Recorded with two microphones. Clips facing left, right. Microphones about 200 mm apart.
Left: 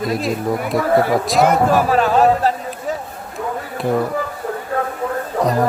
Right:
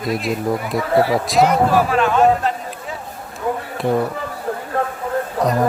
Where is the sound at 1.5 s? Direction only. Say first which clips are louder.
Left 1 dB; 45° left (ahead or behind).